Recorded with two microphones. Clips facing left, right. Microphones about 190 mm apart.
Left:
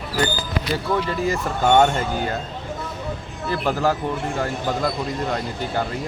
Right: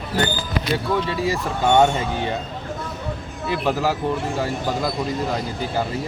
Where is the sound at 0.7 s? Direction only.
Centre (ahead or behind).